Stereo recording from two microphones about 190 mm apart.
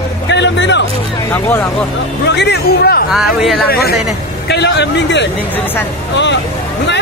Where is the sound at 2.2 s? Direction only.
65° left (ahead or behind).